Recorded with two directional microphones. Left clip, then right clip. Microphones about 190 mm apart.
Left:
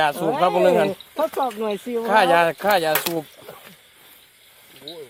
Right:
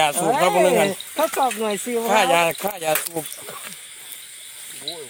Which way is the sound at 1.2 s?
35° right (ahead or behind).